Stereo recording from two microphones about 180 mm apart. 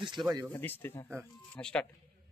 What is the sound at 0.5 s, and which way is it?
Speech, 10° left (ahead or behind).